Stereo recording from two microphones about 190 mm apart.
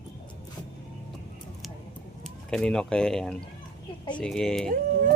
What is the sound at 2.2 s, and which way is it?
Speech, 5° left (ahead or behind).